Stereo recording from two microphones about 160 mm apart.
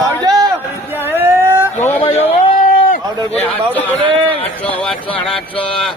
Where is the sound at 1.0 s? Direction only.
15° right (ahead or behind).